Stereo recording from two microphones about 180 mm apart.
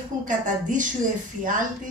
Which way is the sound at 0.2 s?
45° right (ahead or behind).